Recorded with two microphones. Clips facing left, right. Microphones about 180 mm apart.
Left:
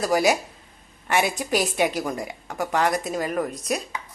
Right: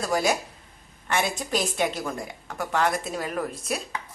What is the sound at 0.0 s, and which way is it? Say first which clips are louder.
A woman's voice: left 4 dB; centre (ahead or behind).